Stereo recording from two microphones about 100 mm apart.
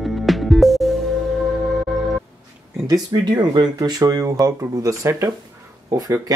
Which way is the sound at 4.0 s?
35° right (ahead or behind).